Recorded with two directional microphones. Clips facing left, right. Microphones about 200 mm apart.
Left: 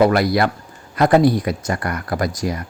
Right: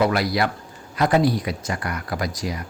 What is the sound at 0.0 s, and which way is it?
Speech, 50° left (ahead or behind).